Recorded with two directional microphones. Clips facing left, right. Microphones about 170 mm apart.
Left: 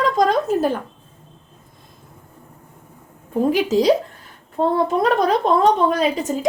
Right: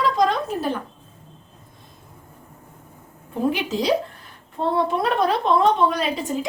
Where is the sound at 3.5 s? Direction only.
40° left (ahead or behind).